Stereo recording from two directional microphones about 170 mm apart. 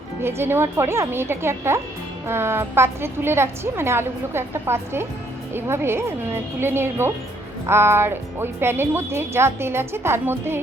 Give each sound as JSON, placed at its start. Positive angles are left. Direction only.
{"t": 0.2, "sound": "speech", "side_deg": -15}